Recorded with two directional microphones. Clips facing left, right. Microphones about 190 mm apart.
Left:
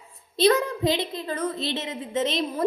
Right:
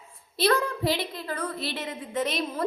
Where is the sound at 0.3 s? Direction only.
20° left (ahead or behind).